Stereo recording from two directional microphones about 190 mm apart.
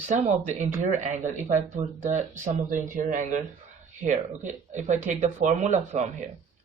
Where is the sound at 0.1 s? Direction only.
40° right (ahead or behind).